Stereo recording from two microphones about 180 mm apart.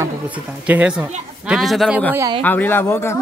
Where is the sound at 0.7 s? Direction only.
5° right (ahead or behind).